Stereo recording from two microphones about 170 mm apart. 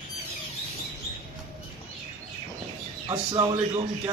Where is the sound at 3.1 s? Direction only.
25° right (ahead or behind).